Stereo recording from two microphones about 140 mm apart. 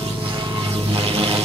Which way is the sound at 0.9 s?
40° right (ahead or behind).